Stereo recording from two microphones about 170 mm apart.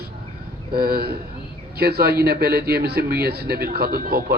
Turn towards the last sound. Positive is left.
turn(degrees=-60)  # may be behind; listen again after turning